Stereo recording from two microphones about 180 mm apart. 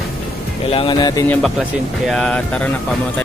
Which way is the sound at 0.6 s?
30° left (ahead or behind).